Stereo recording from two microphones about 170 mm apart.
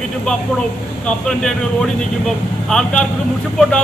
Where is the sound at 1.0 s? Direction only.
5° left (ahead or behind).